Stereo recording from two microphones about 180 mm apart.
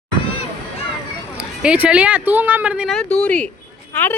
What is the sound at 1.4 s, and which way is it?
Speech, 5° right (ahead or behind).